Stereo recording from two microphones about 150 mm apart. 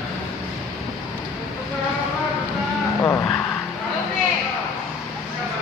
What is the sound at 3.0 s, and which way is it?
Vehicle, 15° left (ahead or behind).